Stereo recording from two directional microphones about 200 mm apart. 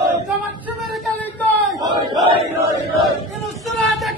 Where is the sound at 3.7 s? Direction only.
Centre (ahead or behind).